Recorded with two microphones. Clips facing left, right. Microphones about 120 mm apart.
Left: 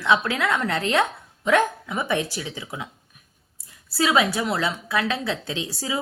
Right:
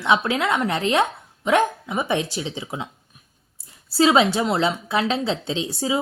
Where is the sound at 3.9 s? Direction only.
25° right (ahead or behind).